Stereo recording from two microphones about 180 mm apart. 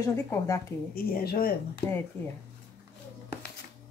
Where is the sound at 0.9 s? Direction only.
55° left (ahead or behind).